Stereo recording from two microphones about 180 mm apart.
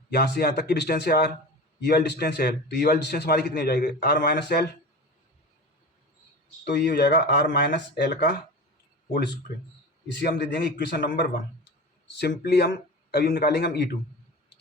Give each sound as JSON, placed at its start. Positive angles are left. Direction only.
{"t": 0.1, "sound": "a man's voice", "side_deg": 60}
{"t": 6.7, "sound": "a man's voice", "side_deg": 65}
{"t": 10.1, "sound": "a man's voice", "side_deg": 65}
{"t": 12.2, "sound": "a man's voice", "side_deg": 65}